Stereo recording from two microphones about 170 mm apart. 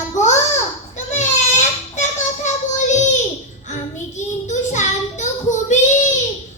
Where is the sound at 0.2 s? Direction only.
45° left (ahead or behind).